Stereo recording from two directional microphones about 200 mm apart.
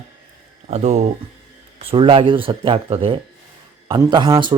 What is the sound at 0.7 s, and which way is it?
Speech, 35° right (ahead or behind).